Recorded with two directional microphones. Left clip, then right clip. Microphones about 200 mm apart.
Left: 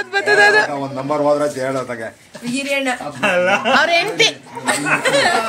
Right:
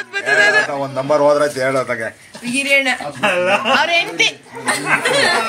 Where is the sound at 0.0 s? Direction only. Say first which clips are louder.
Left 1 dB; 30° left (ahead or behind).